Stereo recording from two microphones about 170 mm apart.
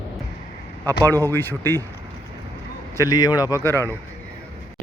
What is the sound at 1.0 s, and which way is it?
Speech, 15° left (ahead or behind).